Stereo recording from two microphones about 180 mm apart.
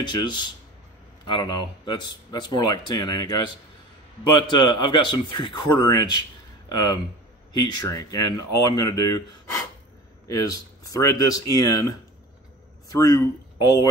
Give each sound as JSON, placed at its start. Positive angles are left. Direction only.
{"t": 0.0, "sound": "speech", "side_deg": 25}
{"t": 10.2, "sound": "speech", "side_deg": 20}